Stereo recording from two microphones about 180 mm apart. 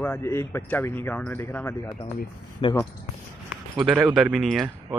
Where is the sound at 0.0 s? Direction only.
10° left (ahead or behind).